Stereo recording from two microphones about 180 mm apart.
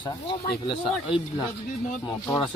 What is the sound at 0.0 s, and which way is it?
Speech, 25° left (ahead or behind).